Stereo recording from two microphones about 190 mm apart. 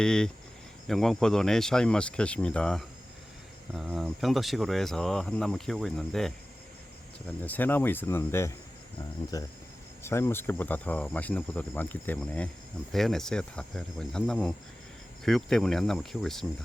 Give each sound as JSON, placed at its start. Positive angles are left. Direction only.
{"t": 0.0, "sound": "speech", "side_deg": 5}
{"t": 9.3, "sound": "cricket", "side_deg": 20}
{"t": 10.0, "sound": "speech", "side_deg": 15}